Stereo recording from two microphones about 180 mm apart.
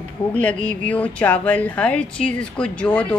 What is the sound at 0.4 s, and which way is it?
Speech, 5° left (ahead or behind).